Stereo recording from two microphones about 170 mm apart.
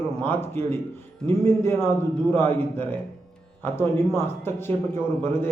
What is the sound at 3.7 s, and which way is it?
Speech, 15° left (ahead or behind).